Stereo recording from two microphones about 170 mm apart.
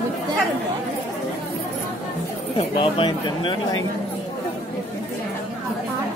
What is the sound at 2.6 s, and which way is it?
Speech, 30° left (ahead or behind).